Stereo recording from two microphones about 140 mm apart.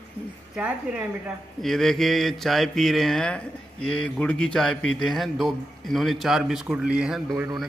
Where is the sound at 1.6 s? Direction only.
Centre (ahead or behind).